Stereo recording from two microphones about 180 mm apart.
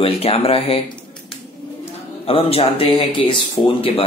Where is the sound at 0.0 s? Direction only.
30° left (ahead or behind).